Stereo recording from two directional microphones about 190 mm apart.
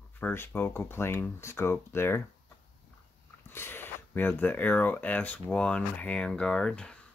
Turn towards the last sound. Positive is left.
turn(degrees=5)  # may be behind; listen again after turning